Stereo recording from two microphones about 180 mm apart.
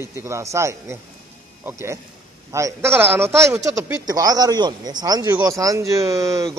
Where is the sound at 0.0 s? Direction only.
15° right (ahead or behind).